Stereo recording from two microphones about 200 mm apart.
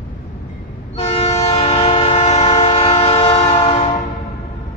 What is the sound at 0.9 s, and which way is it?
Train, 35° left (ahead or behind).